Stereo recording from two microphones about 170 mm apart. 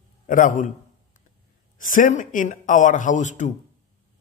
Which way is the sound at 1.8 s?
50° left (ahead or behind).